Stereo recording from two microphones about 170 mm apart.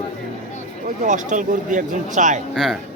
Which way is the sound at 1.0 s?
45° right (ahead or behind).